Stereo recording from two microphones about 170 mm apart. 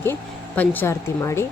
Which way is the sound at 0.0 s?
10° left (ahead or behind).